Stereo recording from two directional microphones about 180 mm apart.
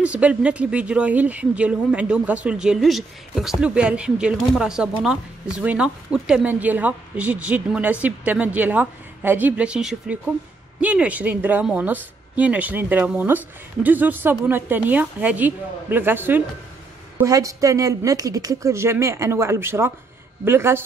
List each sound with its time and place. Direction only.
0.0 s a woman's voice: 5° right (ahead or behind)